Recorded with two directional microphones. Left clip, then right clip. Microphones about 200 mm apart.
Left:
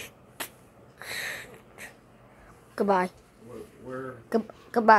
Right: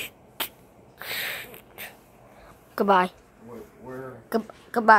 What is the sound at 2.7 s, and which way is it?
Speech, 10° right (ahead or behind).